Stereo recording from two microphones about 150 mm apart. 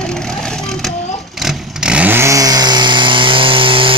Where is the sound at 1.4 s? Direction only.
5° right (ahead or behind).